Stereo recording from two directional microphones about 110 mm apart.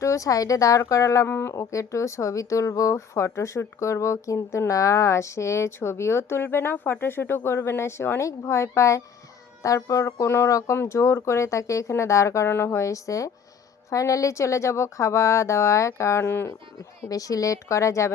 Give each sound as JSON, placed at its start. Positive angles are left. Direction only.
{"t": 0.0, "sound": "speech", "side_deg": 30}
{"t": 17.0, "sound": "speech", "side_deg": 35}